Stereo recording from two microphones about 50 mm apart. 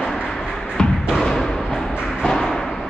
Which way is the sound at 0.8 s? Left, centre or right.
Centre.